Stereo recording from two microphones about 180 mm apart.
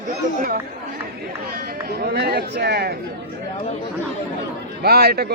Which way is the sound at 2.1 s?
60° right (ahead or behind).